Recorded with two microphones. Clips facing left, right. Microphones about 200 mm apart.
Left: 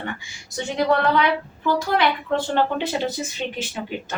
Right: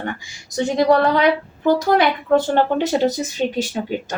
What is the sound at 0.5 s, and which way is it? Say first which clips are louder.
A woman's voice: right 5 dB; 40° right (ahead or behind).